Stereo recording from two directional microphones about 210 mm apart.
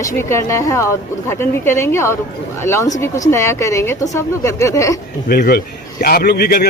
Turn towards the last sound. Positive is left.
turn(degrees=50)  # may be behind; listen again after turning